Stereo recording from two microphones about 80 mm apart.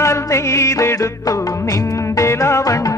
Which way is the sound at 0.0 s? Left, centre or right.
Left.